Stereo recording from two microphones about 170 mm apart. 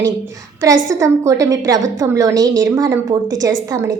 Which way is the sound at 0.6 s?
20° right (ahead or behind).